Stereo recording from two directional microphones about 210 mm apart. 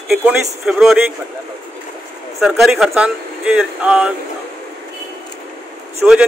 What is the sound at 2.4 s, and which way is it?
A man's voice, centre (ahead or behind).